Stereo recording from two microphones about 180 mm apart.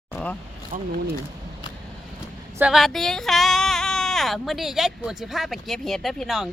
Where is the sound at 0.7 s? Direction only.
45° right (ahead or behind).